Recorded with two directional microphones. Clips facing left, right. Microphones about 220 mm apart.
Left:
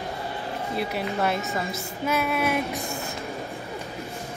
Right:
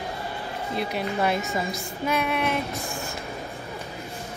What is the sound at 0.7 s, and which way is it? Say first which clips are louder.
A woman's voice: right 1 dB; 5° left (ahead or behind).